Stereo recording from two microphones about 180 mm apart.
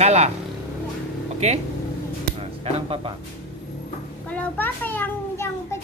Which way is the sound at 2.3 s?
30° right (ahead or behind).